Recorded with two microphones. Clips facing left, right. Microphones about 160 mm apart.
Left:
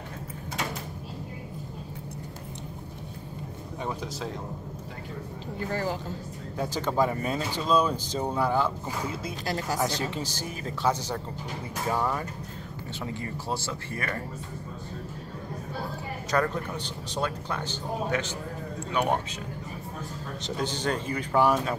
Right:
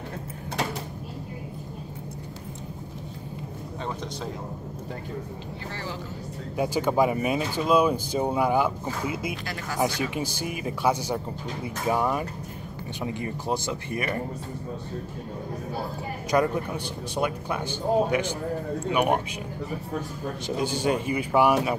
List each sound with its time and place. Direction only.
5.7 s speech: 45° left (ahead or behind)
6.5 s speech: 10° right (ahead or behind)
16.3 s speech: 15° right (ahead or behind)
20.4 s speech: 10° right (ahead or behind)